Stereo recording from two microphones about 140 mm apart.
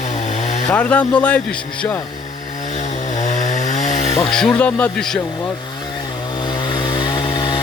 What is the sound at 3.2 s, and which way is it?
Chainsaw, 60° left (ahead or behind).